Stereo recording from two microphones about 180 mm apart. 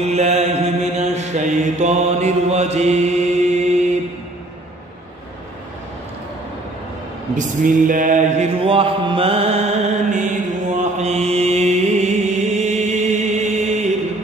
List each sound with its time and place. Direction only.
0.0 s mantra: 40° right (ahead or behind)
7.3 s mantra: 45° right (ahead or behind)